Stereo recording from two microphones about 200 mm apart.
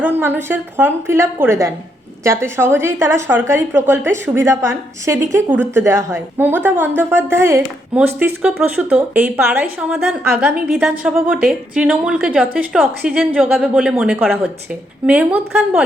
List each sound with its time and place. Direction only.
0.0 s a woman's voice: 10° right (ahead or behind)